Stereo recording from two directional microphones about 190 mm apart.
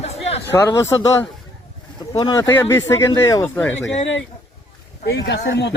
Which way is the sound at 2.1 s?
20° left (ahead or behind).